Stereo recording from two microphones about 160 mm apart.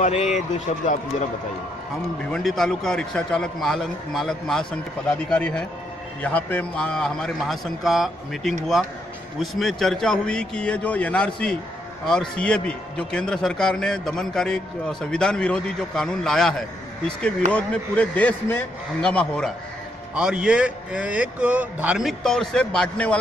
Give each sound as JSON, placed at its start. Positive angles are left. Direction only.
{"t": 0.0, "sound": "speech", "side_deg": 45}
{"t": 2.3, "sound": "a man's voice", "side_deg": 0}
{"t": 20.2, "sound": "a man's voice", "side_deg": -5}